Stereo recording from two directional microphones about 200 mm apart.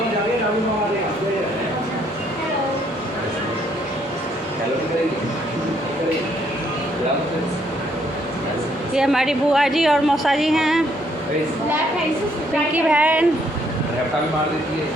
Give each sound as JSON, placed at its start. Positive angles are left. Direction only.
{"t": 9.0, "sound": "a woman's voice", "side_deg": -5}
{"t": 12.7, "sound": "a woman's voice", "side_deg": -10}